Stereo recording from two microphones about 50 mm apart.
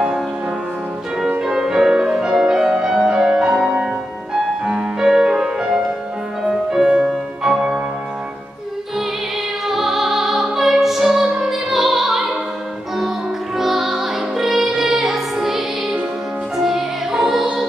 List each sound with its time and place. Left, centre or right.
1.4 s music: centre
9.7 s music: centre
13.6 s music: centre